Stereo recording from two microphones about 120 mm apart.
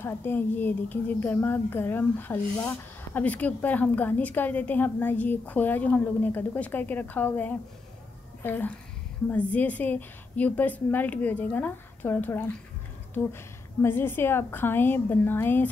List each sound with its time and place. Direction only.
0.0 s a woman's voice: 15° left (ahead or behind)